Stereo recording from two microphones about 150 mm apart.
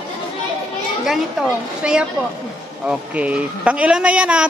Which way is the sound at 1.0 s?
Centre (ahead or behind).